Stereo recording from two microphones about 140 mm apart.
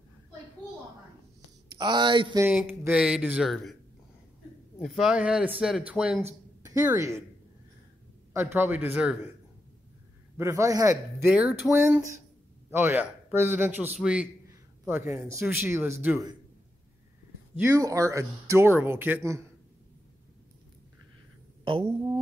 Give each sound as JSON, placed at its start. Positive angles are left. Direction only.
{"t": 1.8, "sound": "speech", "side_deg": -30}
{"t": 2.9, "sound": "a man's voice", "side_deg": -10}
{"t": 4.7, "sound": "speech", "side_deg": 0}
{"t": 6.6, "sound": "speech", "side_deg": -25}
{"t": 8.3, "sound": "a man's voice", "side_deg": -15}
{"t": 10.3, "sound": "speech", "side_deg": -20}
{"t": 11.3, "sound": "a man's voice", "side_deg": -10}
{"t": 17.6, "sound": "speech", "side_deg": -20}
{"t": 21.6, "sound": "speech", "side_deg": -40}